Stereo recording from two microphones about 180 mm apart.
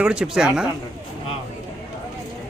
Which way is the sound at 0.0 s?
5° right (ahead or behind).